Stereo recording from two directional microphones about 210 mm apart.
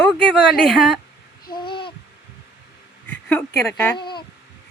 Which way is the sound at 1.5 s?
20° left (ahead or behind).